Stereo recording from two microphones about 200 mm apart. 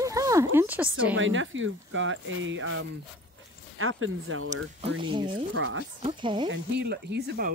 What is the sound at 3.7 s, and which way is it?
Speech, 90° right.